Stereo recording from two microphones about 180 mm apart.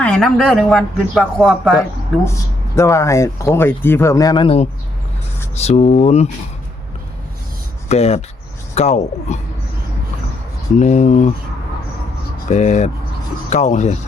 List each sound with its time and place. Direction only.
0.0 s speech: 5° left (ahead or behind)
1.2 s speech: 10° right (ahead or behind)
2.7 s speech: 15° left (ahead or behind); by 6.2 s 35° left (ahead or behind)
7.9 s speech: 35° left (ahead or behind)
10.8 s speech: 40° left (ahead or behind)
12.5 s speech: 40° left (ahead or behind)